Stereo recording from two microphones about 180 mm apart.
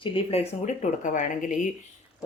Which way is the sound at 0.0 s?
30° left (ahead or behind).